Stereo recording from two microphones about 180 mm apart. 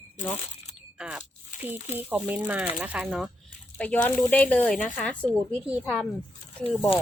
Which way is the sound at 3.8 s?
10° left (ahead or behind).